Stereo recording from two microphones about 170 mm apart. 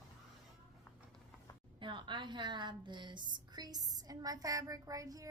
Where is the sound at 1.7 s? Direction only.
30° right (ahead or behind).